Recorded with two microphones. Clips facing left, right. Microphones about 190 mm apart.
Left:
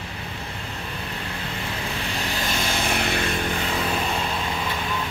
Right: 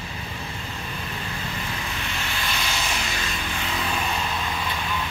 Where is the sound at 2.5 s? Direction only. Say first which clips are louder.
Left 4 dB; 50° left (ahead or behind).